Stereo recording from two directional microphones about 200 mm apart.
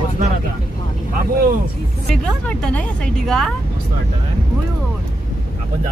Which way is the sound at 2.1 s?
5° left (ahead or behind).